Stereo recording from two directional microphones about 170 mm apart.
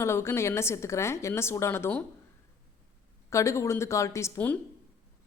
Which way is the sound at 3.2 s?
15° left (ahead or behind).